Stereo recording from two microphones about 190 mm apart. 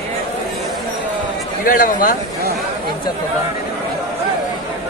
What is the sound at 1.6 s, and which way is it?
Speech, 45° left (ahead or behind).